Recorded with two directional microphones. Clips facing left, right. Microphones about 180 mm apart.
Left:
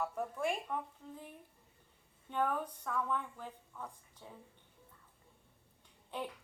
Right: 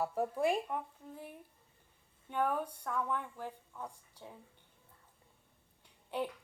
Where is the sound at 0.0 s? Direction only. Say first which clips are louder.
Right 4 dB; 35° right (ahead or behind).